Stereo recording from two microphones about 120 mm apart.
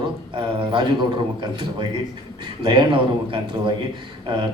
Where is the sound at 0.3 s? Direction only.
45° right (ahead or behind).